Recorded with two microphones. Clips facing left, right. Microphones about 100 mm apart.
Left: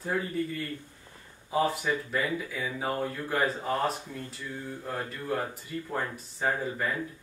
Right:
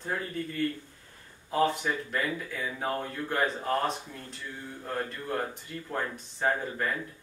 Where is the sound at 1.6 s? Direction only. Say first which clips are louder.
Right 2 dB; 5° left (ahead or behind).